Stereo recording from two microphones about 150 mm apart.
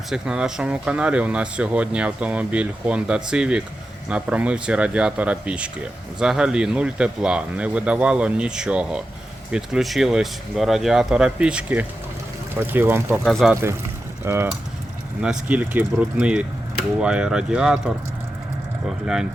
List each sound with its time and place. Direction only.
0.1 s speech: 5° right (ahead or behind)
13.2 s speech: 5° left (ahead or behind)
13.5 s speech: 15° right (ahead or behind)